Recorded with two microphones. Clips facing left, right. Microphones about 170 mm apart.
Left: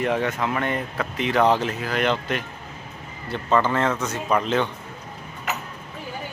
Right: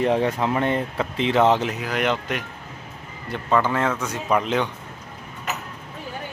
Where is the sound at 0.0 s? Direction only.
30° right (ahead or behind); by 4.7 s 15° right (ahead or behind).